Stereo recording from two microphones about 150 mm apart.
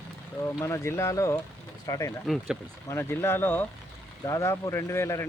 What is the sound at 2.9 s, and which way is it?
Speech, 15° left (ahead or behind).